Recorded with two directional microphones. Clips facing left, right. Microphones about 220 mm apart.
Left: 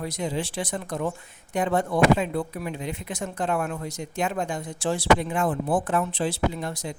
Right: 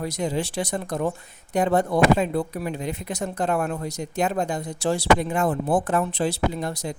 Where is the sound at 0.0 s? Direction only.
40° right (ahead or behind).